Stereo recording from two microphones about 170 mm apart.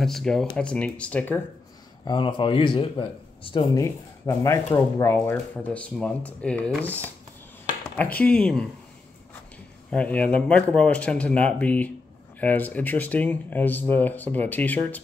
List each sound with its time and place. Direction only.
0.0 s speech: centre (ahead or behind)
2.0 s speech: 30° left (ahead or behind)
3.7 s speech: 20° left (ahead or behind)
7.8 s a sound: 10° left (ahead or behind)
8.2 s speech: 5° left (ahead or behind)
9.8 s speech: 5° left (ahead or behind)